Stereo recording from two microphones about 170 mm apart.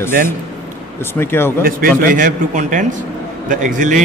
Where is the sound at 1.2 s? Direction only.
15° left (ahead or behind).